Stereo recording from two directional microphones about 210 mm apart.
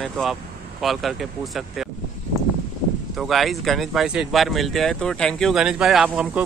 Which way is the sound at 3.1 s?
Centre (ahead or behind).